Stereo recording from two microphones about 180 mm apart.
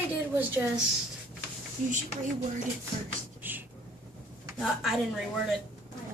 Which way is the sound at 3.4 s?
10° right (ahead or behind).